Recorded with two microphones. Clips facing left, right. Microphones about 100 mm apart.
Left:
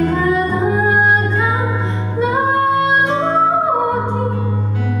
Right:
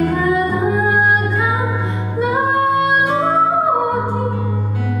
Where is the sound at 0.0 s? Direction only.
15° right (ahead or behind).